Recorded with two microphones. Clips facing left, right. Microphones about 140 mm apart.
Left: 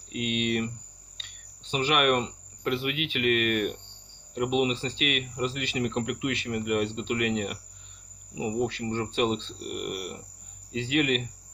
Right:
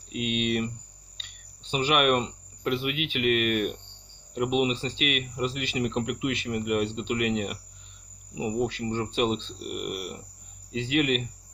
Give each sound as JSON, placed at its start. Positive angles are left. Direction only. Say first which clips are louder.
{"t": 0.1, "sound": "speech", "louder": "right 1 dB", "side_deg": -15}
{"t": 1.7, "sound": "speech", "louder": "right 1 dB", "side_deg": -15}